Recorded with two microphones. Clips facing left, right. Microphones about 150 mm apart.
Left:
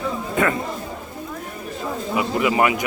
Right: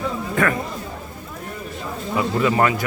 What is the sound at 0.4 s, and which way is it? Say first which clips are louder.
Speech: even; 20° left (ahead or behind).